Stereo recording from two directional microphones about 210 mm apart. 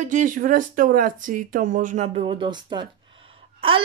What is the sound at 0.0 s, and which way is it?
A child's voice, 40° right (ahead or behind).